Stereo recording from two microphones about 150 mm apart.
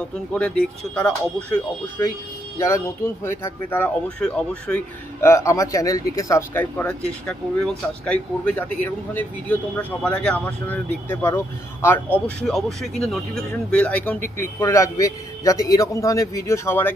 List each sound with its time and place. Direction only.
0.3 s speech: 5° left (ahead or behind)
3.3 s speech: 15° left (ahead or behind)
6.6 s speech: 10° left (ahead or behind)
12.4 s speech: centre (ahead or behind)